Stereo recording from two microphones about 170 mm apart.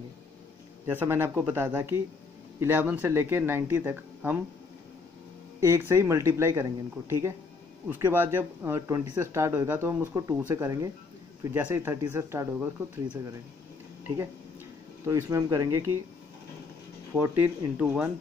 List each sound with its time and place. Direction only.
0.8 s speech: 15° right (ahead or behind)
5.6 s speech: 15° right (ahead or behind)
15.0 s speech: 15° right (ahead or behind)
17.1 s speech: 10° right (ahead or behind)